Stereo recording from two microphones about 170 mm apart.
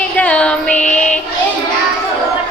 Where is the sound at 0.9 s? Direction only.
5° left (ahead or behind).